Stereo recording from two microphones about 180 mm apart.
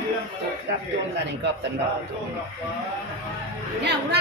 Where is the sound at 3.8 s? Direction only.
70° right (ahead or behind).